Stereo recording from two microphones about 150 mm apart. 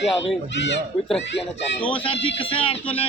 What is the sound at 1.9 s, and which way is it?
Speech, 35° left (ahead or behind).